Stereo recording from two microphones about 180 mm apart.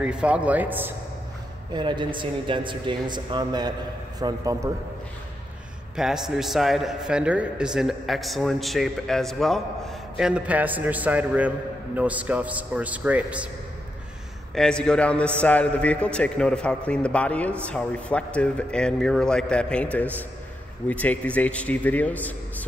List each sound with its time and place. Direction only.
0.0 s speech: 5° right (ahead or behind)
1.7 s a man's voice: 25° right (ahead or behind)
5.9 s a man's voice: 5° right (ahead or behind)
14.5 s a man's voice: 5° left (ahead or behind)